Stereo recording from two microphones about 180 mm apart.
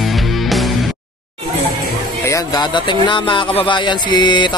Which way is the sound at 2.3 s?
25° left (ahead or behind).